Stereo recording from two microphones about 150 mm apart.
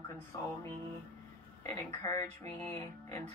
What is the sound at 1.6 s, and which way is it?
Speech, 20° left (ahead or behind).